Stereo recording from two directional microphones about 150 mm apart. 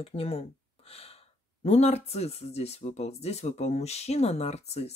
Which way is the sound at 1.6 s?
45° left (ahead or behind).